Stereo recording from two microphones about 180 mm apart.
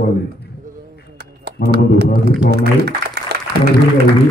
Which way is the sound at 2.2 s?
65° right (ahead or behind).